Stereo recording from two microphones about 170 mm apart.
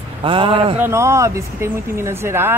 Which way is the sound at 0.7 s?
15° right (ahead or behind).